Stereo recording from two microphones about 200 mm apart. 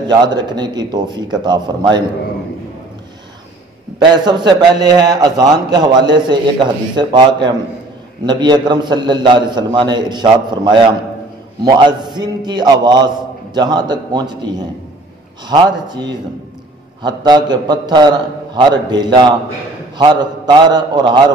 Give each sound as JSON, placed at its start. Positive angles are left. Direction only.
{"t": 0.0, "sound": "a man's voice", "side_deg": -20}
{"t": 4.0, "sound": "a man's voice", "side_deg": -20}